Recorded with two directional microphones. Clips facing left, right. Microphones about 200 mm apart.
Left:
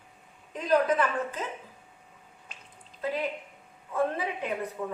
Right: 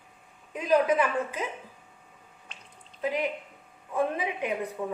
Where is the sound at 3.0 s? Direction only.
15° right (ahead or behind).